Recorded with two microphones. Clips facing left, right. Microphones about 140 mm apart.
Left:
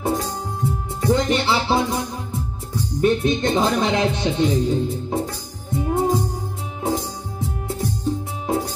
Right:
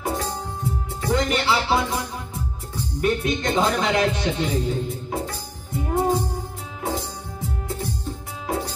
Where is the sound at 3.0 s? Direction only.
25° left (ahead or behind).